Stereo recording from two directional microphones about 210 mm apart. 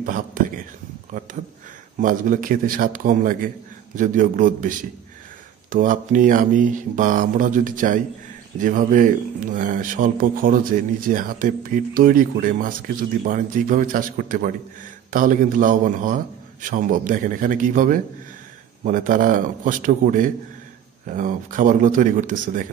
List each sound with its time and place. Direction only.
0.0 s speech: 40° right (ahead or behind)